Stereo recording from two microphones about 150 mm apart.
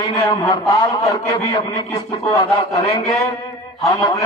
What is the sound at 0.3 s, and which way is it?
A man's voice, 25° left (ahead or behind).